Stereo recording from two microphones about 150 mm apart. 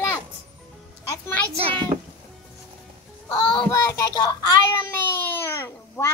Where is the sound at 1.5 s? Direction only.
35° right (ahead or behind).